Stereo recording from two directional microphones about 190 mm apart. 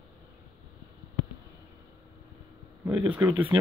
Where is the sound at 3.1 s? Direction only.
5° right (ahead or behind).